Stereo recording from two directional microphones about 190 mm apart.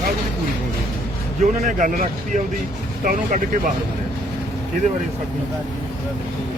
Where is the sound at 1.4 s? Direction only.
40° right (ahead or behind).